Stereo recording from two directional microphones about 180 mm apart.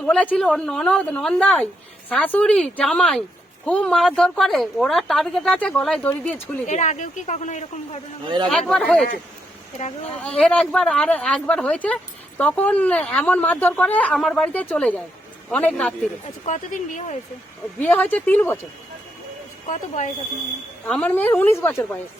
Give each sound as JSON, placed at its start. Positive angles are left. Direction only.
{"t": 0.0, "sound": "a woman's voice", "side_deg": 5}
{"t": 6.7, "sound": "a woman's voice", "side_deg": 40}
{"t": 8.4, "sound": "a woman's voice", "side_deg": 5}
{"t": 10.2, "sound": "a woman's voice", "side_deg": 5}
{"t": 16.5, "sound": "speech", "side_deg": 45}
{"t": 17.7, "sound": "a woman's voice", "side_deg": 10}
{"t": 20.0, "sound": "speech", "side_deg": 45}
{"t": 20.8, "sound": "a woman's voice", "side_deg": 5}